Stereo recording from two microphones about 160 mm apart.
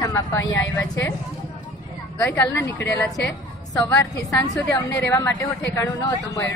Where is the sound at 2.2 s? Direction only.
10° left (ahead or behind).